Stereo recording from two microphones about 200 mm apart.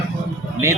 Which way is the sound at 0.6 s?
15° right (ahead or behind).